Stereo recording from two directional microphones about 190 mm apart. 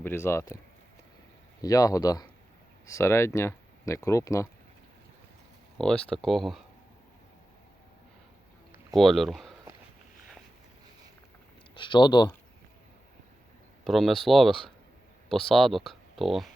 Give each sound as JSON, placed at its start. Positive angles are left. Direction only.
{"t": 0.0, "sound": "speech", "side_deg": 15}
{"t": 1.6, "sound": "speech", "side_deg": 20}
{"t": 5.7, "sound": "speech", "side_deg": 5}
{"t": 9.0, "sound": "speech", "side_deg": 0}
{"t": 11.7, "sound": "speech", "side_deg": 25}
{"t": 13.8, "sound": "speech", "side_deg": 0}